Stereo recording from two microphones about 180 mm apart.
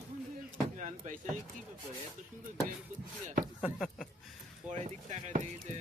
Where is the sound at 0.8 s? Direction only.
40° right (ahead or behind).